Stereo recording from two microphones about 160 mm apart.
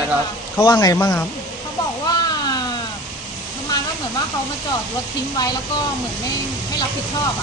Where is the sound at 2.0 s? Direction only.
25° left (ahead or behind).